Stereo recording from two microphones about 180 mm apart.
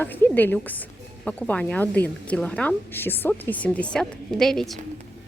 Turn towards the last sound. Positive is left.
turn(degrees=0)  # may be behind; listen again after turning